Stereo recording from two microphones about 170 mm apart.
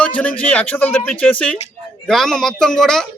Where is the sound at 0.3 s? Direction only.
10° left (ahead or behind).